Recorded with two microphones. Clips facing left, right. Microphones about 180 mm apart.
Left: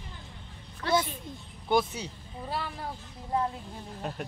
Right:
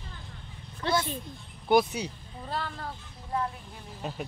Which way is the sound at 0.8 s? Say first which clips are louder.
Left 1 dB; 25° right (ahead or behind).